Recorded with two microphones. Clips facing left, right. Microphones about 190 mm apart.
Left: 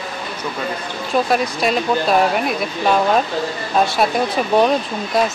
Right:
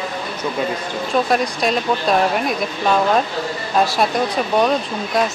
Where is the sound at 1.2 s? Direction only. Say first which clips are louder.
Even; centre (ahead or behind).